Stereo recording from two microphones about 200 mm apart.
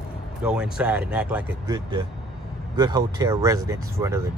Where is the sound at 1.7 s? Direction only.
20° right (ahead or behind).